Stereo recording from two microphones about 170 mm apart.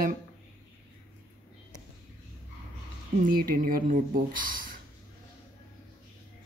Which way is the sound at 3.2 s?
60° right (ahead or behind).